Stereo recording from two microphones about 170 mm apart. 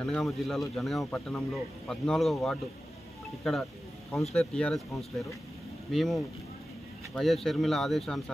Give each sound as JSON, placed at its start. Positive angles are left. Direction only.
{"t": 0.0, "sound": "speech", "side_deg": 5}
{"t": 5.9, "sound": "speech", "side_deg": 0}